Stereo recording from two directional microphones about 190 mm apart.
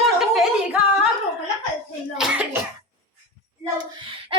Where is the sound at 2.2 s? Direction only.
5° right (ahead or behind).